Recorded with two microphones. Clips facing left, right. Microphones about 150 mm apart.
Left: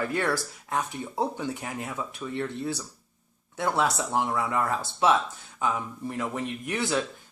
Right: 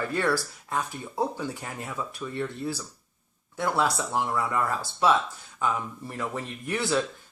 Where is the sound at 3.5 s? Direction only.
20° left (ahead or behind).